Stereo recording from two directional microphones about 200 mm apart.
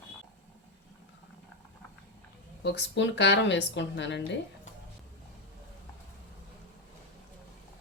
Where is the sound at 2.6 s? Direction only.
60° left (ahead or behind).